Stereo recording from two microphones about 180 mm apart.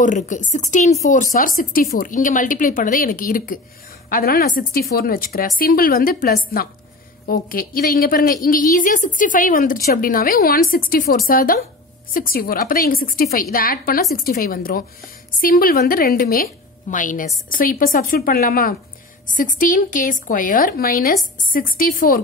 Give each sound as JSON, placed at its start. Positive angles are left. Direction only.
{"t": 0.0, "sound": "a woman's voice", "side_deg": 45}